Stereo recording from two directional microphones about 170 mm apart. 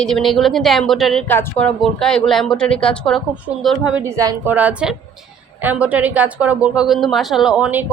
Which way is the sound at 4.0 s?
20° right (ahead or behind).